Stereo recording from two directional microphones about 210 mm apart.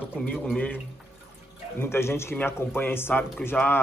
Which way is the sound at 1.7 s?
10° left (ahead or behind).